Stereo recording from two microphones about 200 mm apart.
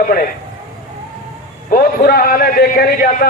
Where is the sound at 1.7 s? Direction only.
50° left (ahead or behind).